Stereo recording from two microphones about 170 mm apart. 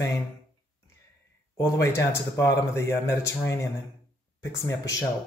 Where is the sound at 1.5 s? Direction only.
15° left (ahead or behind).